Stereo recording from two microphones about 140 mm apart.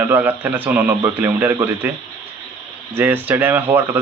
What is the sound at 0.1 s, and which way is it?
Speech, 15° right (ahead or behind).